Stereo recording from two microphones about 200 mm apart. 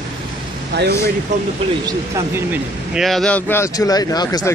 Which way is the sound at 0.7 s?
60° right (ahead or behind).